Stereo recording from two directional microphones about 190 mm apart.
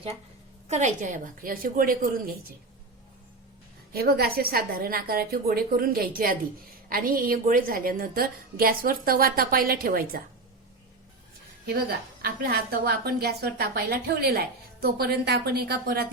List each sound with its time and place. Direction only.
0.7 s a woman's voice: 40° right (ahead or behind)
3.9 s a woman's voice: 55° right (ahead or behind)
11.6 s a woman's voice: 55° right (ahead or behind)